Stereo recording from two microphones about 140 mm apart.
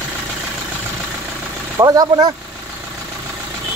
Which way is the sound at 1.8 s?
30° right (ahead or behind).